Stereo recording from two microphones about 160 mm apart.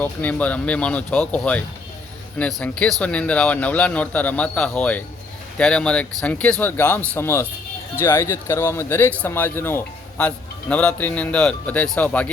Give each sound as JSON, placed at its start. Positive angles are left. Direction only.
{"t": 0.0, "sound": "speech", "side_deg": 10}